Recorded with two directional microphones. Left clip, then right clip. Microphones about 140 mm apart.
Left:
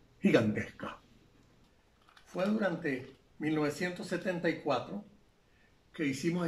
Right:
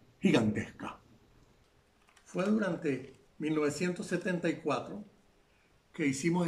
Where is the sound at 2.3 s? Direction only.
20° right (ahead or behind).